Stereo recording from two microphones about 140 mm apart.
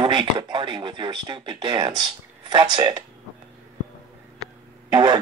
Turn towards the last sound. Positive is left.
turn(degrees=-30)  # may be behind; listen again after turning